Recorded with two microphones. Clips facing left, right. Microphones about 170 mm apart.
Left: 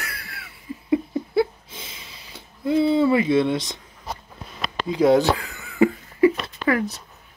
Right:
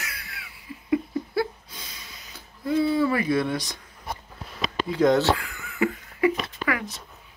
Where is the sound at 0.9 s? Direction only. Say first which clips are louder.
Left 3 dB; 25° left (ahead or behind).